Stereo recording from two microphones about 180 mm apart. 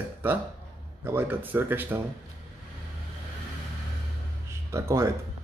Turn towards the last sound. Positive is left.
turn(degrees=-15)  # may be behind; listen again after turning